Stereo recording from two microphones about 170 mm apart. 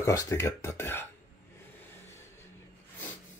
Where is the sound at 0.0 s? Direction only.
15° left (ahead or behind).